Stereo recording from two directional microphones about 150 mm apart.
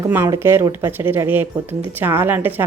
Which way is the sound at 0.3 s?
20° right (ahead or behind).